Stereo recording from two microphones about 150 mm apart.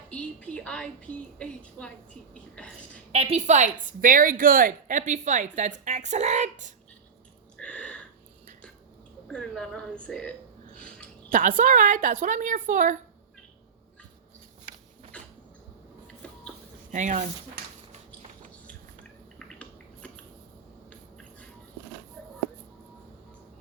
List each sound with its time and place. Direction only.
0.1 s a woman's voice: 10° left (ahead or behind)
3.1 s a woman's voice: 45° right (ahead or behind)
7.6 s a sound: 10° left (ahead or behind)
9.2 s a woman's voice: 5° left (ahead or behind)
10.8 s a sound: 5° left (ahead or behind)
11.3 s a woman's voice: 60° right (ahead or behind)
15.1 s cat: 10° left (ahead or behind)
16.9 s a woman's voice: 55° right (ahead or behind)
19.4 s a sound: 5° left (ahead or behind)